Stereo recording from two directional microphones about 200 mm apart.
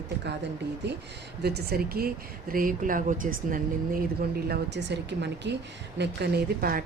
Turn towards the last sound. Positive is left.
turn(degrees=-45)  # may be behind; listen again after turning